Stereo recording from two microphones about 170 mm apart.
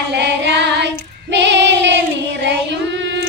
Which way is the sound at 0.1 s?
85° right.